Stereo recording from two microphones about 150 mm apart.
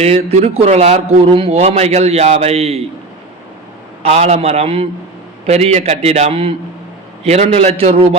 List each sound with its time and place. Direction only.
0.0 s speech: 45° right (ahead or behind)
4.0 s speech: 45° right (ahead or behind)